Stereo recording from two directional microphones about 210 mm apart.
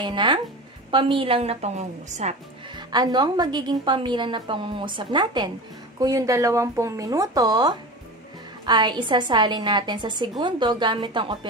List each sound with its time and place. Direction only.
0.0 s a woman's voice: 20° right (ahead or behind)
2.7 s a woman's voice: 20° right (ahead or behind)